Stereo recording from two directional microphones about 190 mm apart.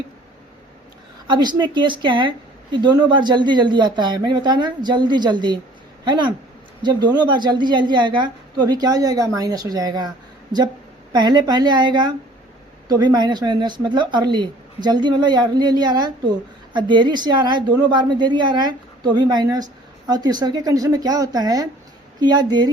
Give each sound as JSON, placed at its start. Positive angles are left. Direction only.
{"t": 1.3, "sound": "a woman's voice", "side_deg": -25}
{"t": 11.1, "sound": "a woman's voice", "side_deg": -20}